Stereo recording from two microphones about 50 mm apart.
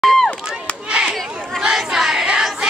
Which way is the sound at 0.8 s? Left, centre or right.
Right.